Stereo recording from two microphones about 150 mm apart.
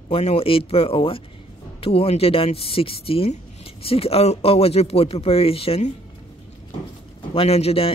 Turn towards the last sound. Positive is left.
turn(degrees=40)  # may be behind; listen again after turning